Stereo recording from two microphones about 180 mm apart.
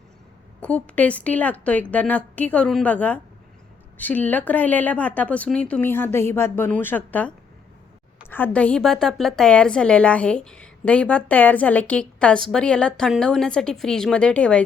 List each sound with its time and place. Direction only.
0.6 s a woman's voice: 5° left (ahead or behind)